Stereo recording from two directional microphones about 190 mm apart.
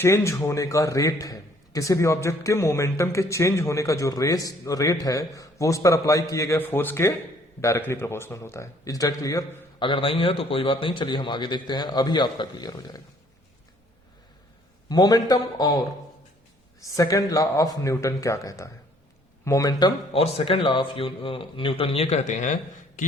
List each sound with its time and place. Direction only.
0.0 s a man's voice: 15° left (ahead or behind)
14.8 s a man's voice: 20° left (ahead or behind)
20.1 s speech: 30° left (ahead or behind)